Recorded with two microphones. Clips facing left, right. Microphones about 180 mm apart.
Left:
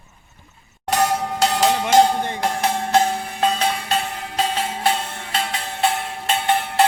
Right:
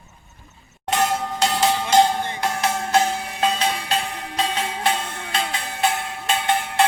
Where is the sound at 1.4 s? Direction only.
45° left (ahead or behind).